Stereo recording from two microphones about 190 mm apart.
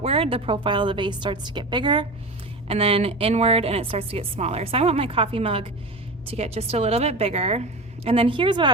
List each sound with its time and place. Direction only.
0.0 s a woman's voice: 30° right (ahead or behind)